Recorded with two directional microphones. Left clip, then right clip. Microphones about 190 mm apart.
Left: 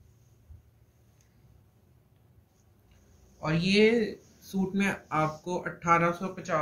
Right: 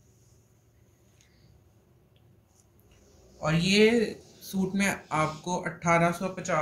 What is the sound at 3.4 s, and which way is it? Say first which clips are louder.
Speech: right 1 dB; 5° right (ahead or behind).